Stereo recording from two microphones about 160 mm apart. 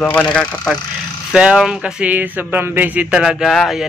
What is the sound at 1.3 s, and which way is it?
Speech, 5° right (ahead or behind).